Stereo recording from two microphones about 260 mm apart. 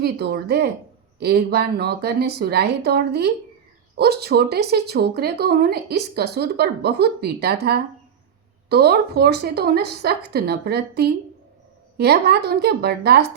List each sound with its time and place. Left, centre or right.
0.0 s speech: right